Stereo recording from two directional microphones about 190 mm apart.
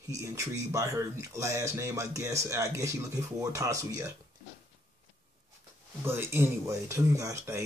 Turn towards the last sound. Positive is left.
turn(degrees=-15)  # may be behind; listen again after turning